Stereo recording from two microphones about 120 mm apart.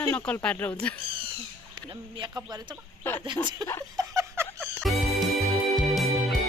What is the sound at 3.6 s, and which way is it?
Speech, 35° right (ahead or behind).